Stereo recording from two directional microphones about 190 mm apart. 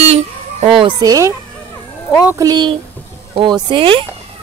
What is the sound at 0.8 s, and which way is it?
Speech, 25° right (ahead or behind).